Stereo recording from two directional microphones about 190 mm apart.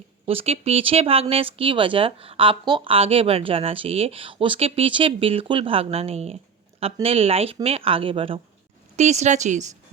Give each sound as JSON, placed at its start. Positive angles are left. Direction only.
{"t": 0.3, "sound": "speech", "side_deg": -30}